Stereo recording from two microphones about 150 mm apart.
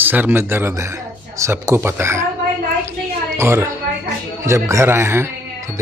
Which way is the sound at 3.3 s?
20° right (ahead or behind).